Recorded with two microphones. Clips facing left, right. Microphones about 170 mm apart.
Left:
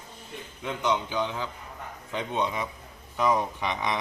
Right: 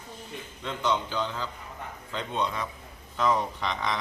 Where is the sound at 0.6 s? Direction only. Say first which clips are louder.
Left 1 dB; 10° left (ahead or behind).